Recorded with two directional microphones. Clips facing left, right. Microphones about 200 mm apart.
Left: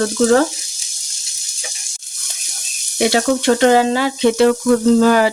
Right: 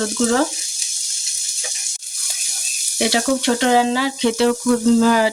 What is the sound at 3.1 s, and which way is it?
Speech, 50° left (ahead or behind).